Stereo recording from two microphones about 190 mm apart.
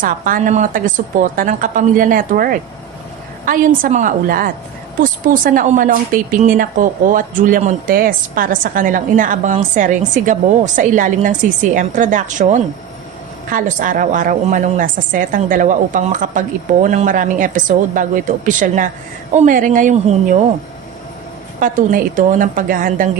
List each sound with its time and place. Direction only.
0.0 s a woman's voice: 45° right (ahead or behind)
21.6 s a woman's voice: 45° right (ahead or behind)